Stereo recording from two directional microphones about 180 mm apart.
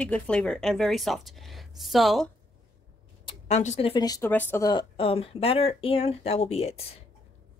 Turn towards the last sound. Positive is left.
turn(degrees=35)  # may be behind; listen again after turning